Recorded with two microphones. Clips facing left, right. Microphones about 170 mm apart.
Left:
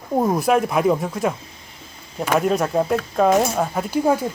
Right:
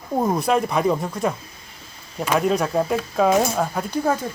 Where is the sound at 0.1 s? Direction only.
5° left (ahead or behind).